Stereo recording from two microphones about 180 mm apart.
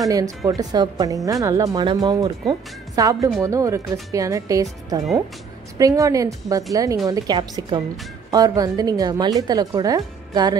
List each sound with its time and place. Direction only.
0.5 s a woman's voice: 20° right (ahead or behind)